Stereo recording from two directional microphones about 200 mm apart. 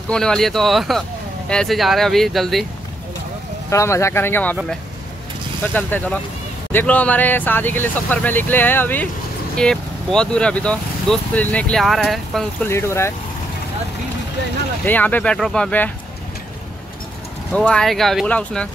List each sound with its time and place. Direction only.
0.1 s speech: 5° left (ahead or behind)
3.7 s speech: 15° left (ahead or behind)
5.6 s speech: 10° left (ahead or behind)
12.6 s speech: 15° left (ahead or behind)
14.9 s speech: 10° left (ahead or behind)
17.5 s speech: 5° left (ahead or behind)